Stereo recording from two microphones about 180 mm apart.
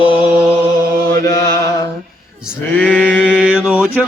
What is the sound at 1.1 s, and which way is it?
Chant, 20° left (ahead or behind).